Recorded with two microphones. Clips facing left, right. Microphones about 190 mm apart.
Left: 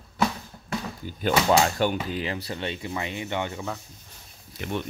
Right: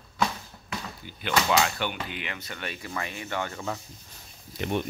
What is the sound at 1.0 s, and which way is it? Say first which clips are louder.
Speech: left 4 dB; 45° left (ahead or behind).